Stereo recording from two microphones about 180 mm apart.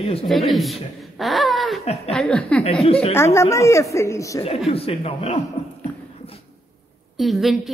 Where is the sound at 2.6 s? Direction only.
35° left (ahead or behind).